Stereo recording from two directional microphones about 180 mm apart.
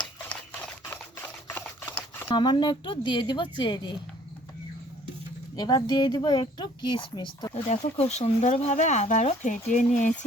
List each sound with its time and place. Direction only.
0.3 s camera: 10° left (ahead or behind)
2.3 s speech: 25° left (ahead or behind)
5.5 s speech: 20° left (ahead or behind)
7.7 s speech: 40° left (ahead or behind)